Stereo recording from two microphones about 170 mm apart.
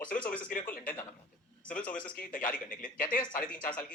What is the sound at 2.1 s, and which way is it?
A woman's voice, 55° left (ahead or behind).